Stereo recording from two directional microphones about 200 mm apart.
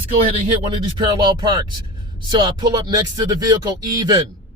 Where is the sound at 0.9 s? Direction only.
20° right (ahead or behind).